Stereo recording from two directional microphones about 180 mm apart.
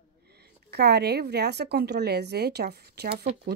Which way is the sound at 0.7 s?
65° right (ahead or behind).